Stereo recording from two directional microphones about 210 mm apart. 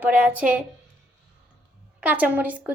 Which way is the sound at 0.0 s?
5° right (ahead or behind).